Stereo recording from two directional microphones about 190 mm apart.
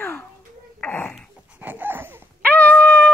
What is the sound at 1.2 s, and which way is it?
Dog, 10° right (ahead or behind).